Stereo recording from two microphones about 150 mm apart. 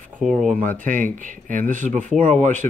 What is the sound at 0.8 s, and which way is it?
Speech, 60° right (ahead or behind).